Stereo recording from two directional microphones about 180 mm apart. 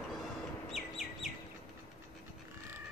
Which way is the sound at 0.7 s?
Centre (ahead or behind).